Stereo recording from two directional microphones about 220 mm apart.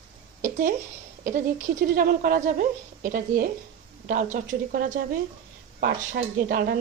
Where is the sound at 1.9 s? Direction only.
40° right (ahead or behind).